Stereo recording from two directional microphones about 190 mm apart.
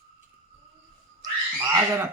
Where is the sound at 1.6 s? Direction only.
15° right (ahead or behind).